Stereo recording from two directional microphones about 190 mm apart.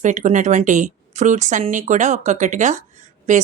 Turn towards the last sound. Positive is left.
turn(degrees=-40)  # may be behind; listen again after turning